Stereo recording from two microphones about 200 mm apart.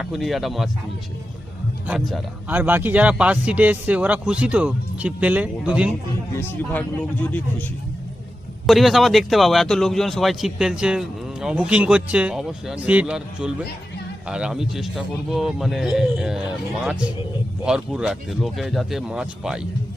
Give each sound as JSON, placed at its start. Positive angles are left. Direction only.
{"t": 0.0, "sound": "a man's voice", "side_deg": 0}
{"t": 1.9, "sound": "a man's voice", "side_deg": 0}
{"t": 2.5, "sound": "speech", "side_deg": -10}
{"t": 6.3, "sound": "speech", "side_deg": 10}
{"t": 8.6, "sound": "a man's voice", "side_deg": 0}